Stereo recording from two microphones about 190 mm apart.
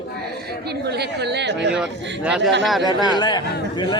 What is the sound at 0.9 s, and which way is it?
Speech, 60° right (ahead or behind).